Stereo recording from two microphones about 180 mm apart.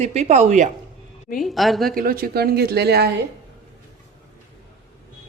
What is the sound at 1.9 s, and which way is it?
Speech, 55° right (ahead or behind).